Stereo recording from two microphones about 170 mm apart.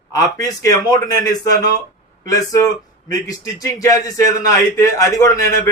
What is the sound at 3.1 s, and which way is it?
A man's voice, 20° left (ahead or behind).